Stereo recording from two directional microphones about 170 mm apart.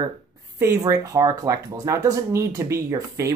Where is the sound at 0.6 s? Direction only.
20° right (ahead or behind).